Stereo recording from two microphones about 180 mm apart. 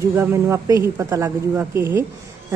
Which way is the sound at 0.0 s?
15° right (ahead or behind).